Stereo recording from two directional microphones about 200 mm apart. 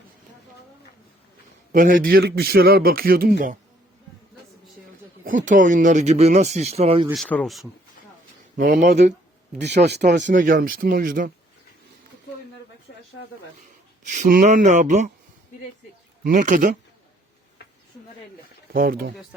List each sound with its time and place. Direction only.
1.7 s a man's voice: 40° right (ahead or behind)
5.2 s speech: 40° right (ahead or behind)
7.1 s speech: 5° left (ahead or behind)
8.5 s speech: 45° right (ahead or behind)
9.6 s speech: 60° right (ahead or behind)
10.3 s a man's voice: 45° right (ahead or behind)
14.1 s speech: 40° right (ahead or behind)
16.2 s a man's voice: 40° right (ahead or behind)
17.6 s a sound: 55° left (ahead or behind)
18.7 s a man's voice: 45° right (ahead or behind)